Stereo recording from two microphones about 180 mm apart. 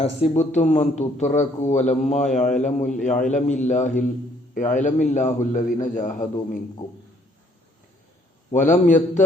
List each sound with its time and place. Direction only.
0.0 s a man's voice: 40° left (ahead or behind)
8.4 s a man's voice: 45° left (ahead or behind)